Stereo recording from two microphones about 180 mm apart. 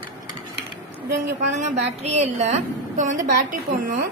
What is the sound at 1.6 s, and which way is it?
A woman's voice, 40° right (ahead or behind).